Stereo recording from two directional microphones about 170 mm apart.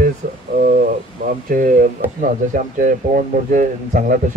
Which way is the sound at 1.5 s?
55° right (ahead or behind).